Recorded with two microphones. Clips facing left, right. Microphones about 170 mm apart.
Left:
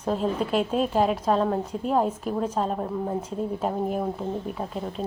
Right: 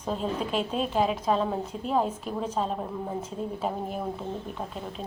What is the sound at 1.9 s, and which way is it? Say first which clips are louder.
Speech: left 3 dB; 5° left (ahead or behind).